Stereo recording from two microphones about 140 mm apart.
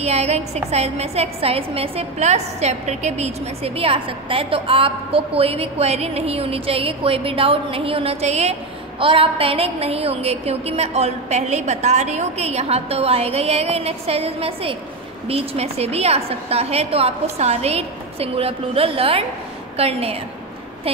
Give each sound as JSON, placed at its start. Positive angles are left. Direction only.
{"t": 0.0, "sound": "a woman's voice", "side_deg": -50}
{"t": 9.0, "sound": "a woman's voice", "side_deg": -40}